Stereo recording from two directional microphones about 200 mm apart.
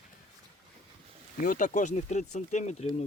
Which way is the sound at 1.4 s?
40° left (ahead or behind).